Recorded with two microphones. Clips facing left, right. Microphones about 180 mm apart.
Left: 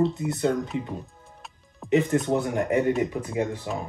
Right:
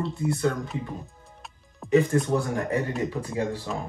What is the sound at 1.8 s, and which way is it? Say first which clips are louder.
Music: right 1 dB; centre (ahead or behind).